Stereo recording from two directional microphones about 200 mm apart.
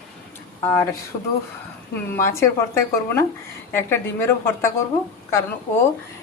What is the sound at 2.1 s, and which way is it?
A woman's voice, 15° left (ahead or behind).